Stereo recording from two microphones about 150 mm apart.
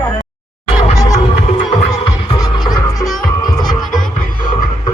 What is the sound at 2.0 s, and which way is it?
Music, 25° left (ahead or behind).